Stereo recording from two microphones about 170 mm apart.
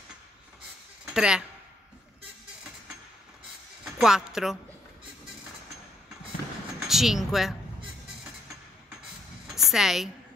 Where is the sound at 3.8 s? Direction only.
5° right (ahead or behind).